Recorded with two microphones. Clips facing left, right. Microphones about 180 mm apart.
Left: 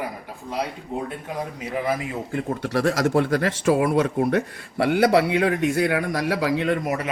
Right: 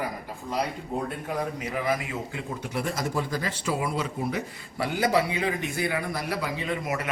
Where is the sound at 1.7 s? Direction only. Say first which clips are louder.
Left 3 dB; 30° left (ahead or behind).